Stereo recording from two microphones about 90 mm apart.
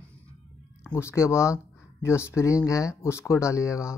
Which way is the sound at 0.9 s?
30° left (ahead or behind).